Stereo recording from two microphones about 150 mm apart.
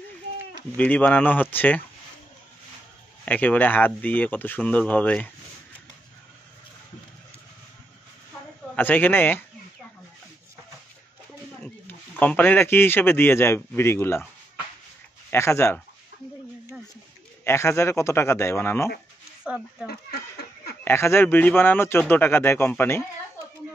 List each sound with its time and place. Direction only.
0.7 s speech: 10° left (ahead or behind)
3.3 s speech: 10° left (ahead or behind)
8.7 s speech: 10° left (ahead or behind)
12.2 s speech: 10° left (ahead or behind)
15.3 s speech: 15° left (ahead or behind)
17.5 s speech: 15° left (ahead or behind)
19.4 s speech: 5° right (ahead or behind)
20.8 s speech: 15° left (ahead or behind)